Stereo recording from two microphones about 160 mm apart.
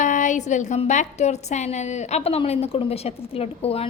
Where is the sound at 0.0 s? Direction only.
50° left (ahead or behind).